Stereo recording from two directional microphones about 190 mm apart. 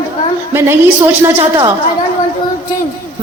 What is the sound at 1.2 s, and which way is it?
Speech, 15° right (ahead or behind).